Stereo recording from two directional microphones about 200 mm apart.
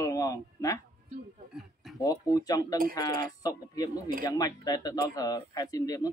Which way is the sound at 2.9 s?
20° left (ahead or behind).